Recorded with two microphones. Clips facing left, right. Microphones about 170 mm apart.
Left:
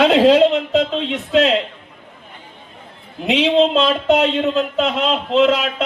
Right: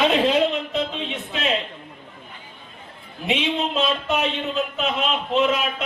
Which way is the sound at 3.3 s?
90° left.